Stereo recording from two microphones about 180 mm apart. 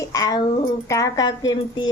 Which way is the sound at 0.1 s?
20° left (ahead or behind).